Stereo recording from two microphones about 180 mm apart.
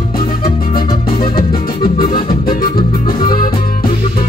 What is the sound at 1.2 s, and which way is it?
Music, 55° left (ahead or behind).